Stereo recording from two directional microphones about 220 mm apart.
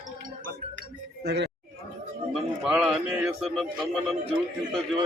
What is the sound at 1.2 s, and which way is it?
Speech, 45° right (ahead or behind).